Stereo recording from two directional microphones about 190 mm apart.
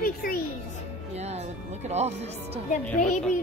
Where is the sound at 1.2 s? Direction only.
35° right (ahead or behind).